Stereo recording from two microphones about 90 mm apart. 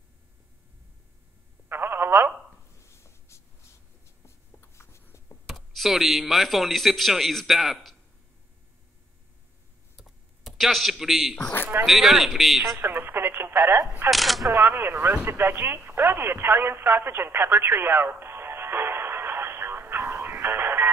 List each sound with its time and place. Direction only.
1.7 s telephone: 25° right (ahead or behind)
2.8 s writing: 30° left (ahead or behind)
4.6 s writing: 30° left (ahead or behind)
5.5 s speech: centre (ahead or behind)
9.9 s computer keyboard: centre (ahead or behind)
11.3 s speech: 20° left (ahead or behind)
11.8 s speech: centre (ahead or behind)
12.6 s speech: 25° right (ahead or behind)
14.1 s speech: centre (ahead or behind)
14.5 s radio: 25° right (ahead or behind)